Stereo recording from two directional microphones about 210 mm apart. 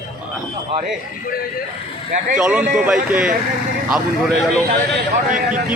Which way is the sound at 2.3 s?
5° right (ahead or behind).